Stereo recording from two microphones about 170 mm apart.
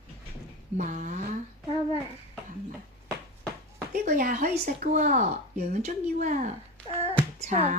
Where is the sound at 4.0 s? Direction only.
55° right (ahead or behind).